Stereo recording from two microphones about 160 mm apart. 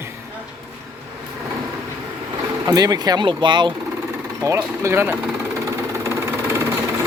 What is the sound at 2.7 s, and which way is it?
Speech, 25° right (ahead or behind).